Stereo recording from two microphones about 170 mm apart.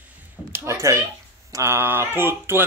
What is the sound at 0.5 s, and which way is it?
Speech, 15° right (ahead or behind).